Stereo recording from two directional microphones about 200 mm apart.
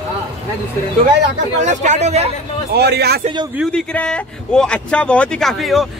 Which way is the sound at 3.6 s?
5° left (ahead or behind).